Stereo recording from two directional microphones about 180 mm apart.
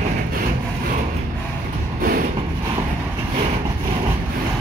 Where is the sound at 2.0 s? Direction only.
50° right (ahead or behind).